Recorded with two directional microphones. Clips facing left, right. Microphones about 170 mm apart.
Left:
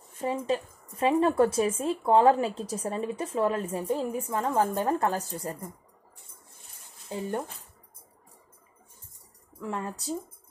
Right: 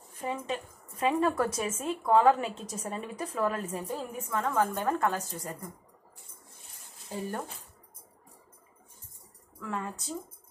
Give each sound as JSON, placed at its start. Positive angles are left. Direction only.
{"t": 0.2, "sound": "a woman's voice", "side_deg": 30}
{"t": 9.6, "sound": "a woman's voice", "side_deg": 30}